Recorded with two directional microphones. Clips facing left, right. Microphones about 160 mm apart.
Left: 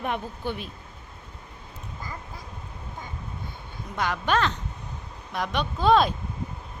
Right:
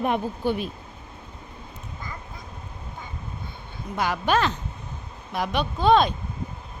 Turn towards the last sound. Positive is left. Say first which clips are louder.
# right 1 dB
turn(degrees=0)  # may be behind; listen again after turning